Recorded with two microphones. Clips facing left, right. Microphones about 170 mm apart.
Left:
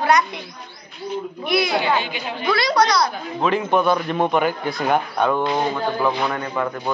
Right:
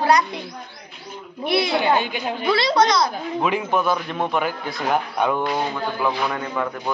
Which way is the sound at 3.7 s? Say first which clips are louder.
Left 3 dB; centre (ahead or behind).